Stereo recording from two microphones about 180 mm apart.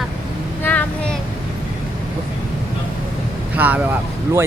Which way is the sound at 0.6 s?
10° left (ahead or behind).